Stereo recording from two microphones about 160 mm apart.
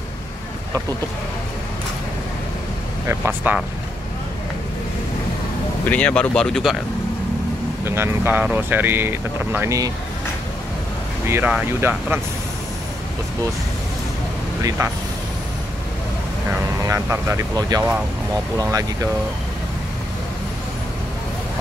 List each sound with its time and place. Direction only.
3.1 s speech: 10° right (ahead or behind)
5.9 s speech: 10° left (ahead or behind)
7.8 s speech: 15° right (ahead or behind)
11.2 s speech: 15° right (ahead or behind)
14.6 s speech: 20° right (ahead or behind)
16.8 s speech: 15° right (ahead or behind)